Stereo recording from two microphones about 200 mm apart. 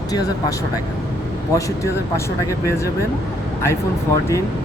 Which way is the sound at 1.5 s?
15° left (ahead or behind).